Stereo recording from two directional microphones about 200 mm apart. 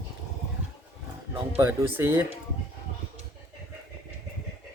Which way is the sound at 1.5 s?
10° right (ahead or behind).